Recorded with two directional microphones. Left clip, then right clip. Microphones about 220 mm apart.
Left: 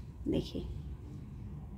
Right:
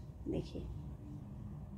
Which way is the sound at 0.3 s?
25° left (ahead or behind).